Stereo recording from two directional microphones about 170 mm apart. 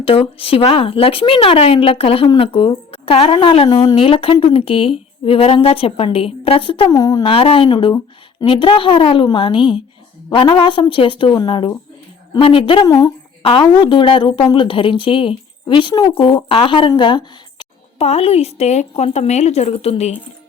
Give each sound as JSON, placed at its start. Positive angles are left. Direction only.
{"t": 0.0, "sound": "a woman's voice", "side_deg": 35}
{"t": 7.3, "sound": "a woman's voice", "side_deg": 35}
{"t": 12.9, "sound": "speech", "side_deg": 20}
{"t": 13.4, "sound": "a woman's voice", "side_deg": 30}